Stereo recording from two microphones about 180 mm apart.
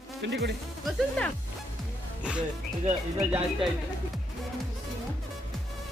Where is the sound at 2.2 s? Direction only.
5° right (ahead or behind).